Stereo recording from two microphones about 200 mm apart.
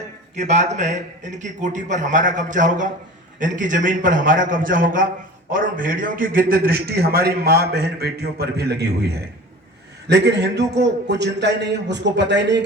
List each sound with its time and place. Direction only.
0.3 s a man's voice: 35° right (ahead or behind); by 12.6 s 60° right (ahead or behind)